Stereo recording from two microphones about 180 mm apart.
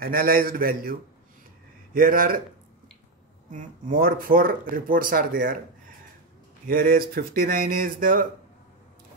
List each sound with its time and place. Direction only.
0.0 s a man's voice: 55° right (ahead or behind)
2.0 s speech: 50° right (ahead or behind)
3.4 s speech: 45° right (ahead or behind)
6.7 s speech: 50° right (ahead or behind)